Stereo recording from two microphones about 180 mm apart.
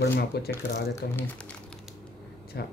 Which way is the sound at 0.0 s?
60° left (ahead or behind).